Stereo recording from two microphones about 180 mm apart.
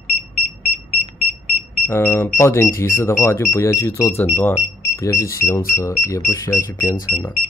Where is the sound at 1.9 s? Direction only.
15° left (ahead or behind).